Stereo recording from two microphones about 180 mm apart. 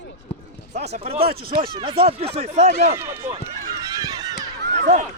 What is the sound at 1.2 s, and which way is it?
Speech, 55° right (ahead or behind).